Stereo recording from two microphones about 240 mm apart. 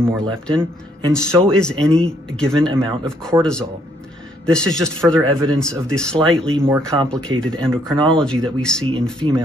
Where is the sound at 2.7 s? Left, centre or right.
Centre.